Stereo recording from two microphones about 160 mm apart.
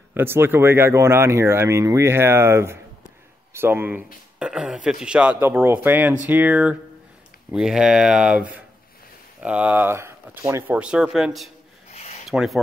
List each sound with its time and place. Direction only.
0.1 s speech: 15° right (ahead or behind)
11.9 s a sound: 40° left (ahead or behind)
12.3 s speech: centre (ahead or behind)